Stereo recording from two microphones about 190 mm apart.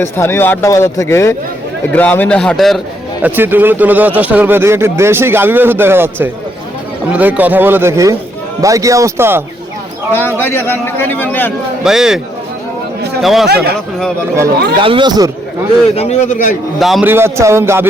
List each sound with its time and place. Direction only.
0.0 s a man's voice: 10° left (ahead or behind)
3.2 s speech: 10° right (ahead or behind)
10.1 s a man's voice: 10° left (ahead or behind)
11.8 s a man's voice: 5° right (ahead or behind)
13.2 s a man's voice: centre (ahead or behind)
14.8 s speech: 25° right (ahead or behind)
16.0 s a man's voice: 35° left (ahead or behind)
16.8 s a man's voice: centre (ahead or behind)
17.1 s speech: 15° right (ahead or behind)